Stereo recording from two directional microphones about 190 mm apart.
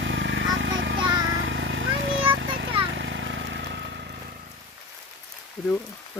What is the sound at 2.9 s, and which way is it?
Vehicle, 70° right (ahead or behind).